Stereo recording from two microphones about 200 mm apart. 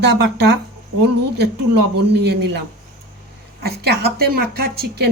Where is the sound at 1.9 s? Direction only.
55° right (ahead or behind).